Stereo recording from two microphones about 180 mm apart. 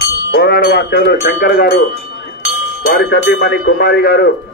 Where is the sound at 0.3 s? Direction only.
55° left (ahead or behind).